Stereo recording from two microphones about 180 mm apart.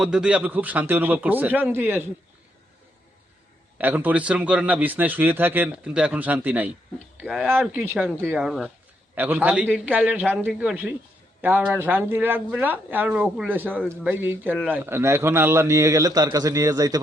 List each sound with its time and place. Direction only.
0.0 s speech: 5° right (ahead or behind)
3.8 s speech: 10° right (ahead or behind)